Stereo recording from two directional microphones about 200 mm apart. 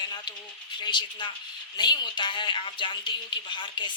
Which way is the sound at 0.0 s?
20° left (ahead or behind).